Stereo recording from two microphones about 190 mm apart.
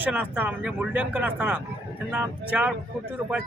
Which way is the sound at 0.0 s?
10° right (ahead or behind).